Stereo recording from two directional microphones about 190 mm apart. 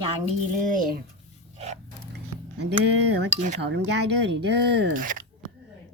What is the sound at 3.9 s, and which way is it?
Speech, 65° right (ahead or behind).